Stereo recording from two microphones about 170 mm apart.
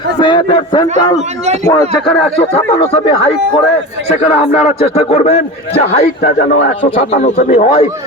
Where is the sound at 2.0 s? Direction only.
35° left (ahead or behind).